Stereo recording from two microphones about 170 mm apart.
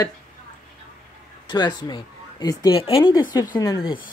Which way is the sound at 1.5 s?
25° left (ahead or behind).